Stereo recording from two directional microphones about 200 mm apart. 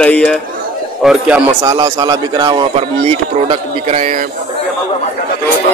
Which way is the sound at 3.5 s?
35° right (ahead or behind).